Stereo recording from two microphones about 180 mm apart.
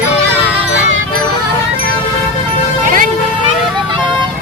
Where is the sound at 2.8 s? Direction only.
50° right (ahead or behind).